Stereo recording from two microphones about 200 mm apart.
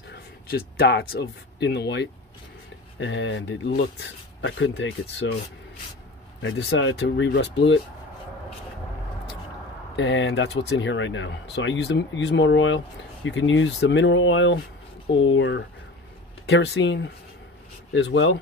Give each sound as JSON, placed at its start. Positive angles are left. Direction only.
{"t": 0.1, "sound": "a sound", "side_deg": 50}
{"t": 1.6, "sound": "speech", "side_deg": 55}
{"t": 3.0, "sound": "speech", "side_deg": 70}
{"t": 6.4, "sound": "speech", "side_deg": 65}
{"t": 9.9, "sound": "speech", "side_deg": 65}
{"t": 16.4, "sound": "speech", "side_deg": 60}